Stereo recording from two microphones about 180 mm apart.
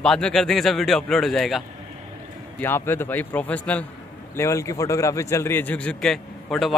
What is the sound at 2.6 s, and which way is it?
A man's voice, 10° left (ahead or behind).